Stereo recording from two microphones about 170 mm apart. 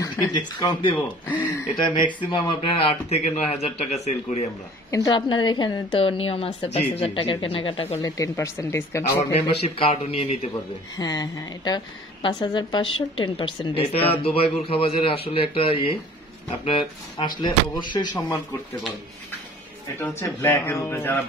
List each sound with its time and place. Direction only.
0.0 s a woman's voice: 20° left (ahead or behind); by 4.5 s 40° left (ahead or behind)
4.9 s a woman's voice: 25° left (ahead or behind)
8.2 s speech: 15° left (ahead or behind)
9.3 s a woman's voice: 35° left (ahead or behind)
11.0 s a woman's voice: 20° left (ahead or behind)
17.4 s a woman's voice: 25° left (ahead or behind)
20.0 s speech: 15° left (ahead or behind)